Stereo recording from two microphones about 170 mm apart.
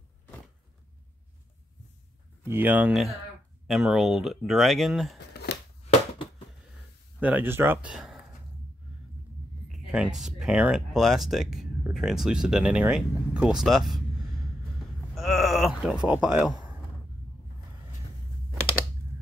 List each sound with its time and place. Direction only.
2.4 s speech: 10° right (ahead or behind)
5.3 s chopping: 70° left (ahead or behind)
7.2 s speech: 10° right (ahead or behind)
7.9 s a sound: centre (ahead or behind)
9.7 s speech: 5° right (ahead or behind)
15.1 s a sound: centre (ahead or behind)